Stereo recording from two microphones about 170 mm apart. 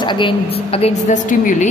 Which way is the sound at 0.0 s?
25° left (ahead or behind).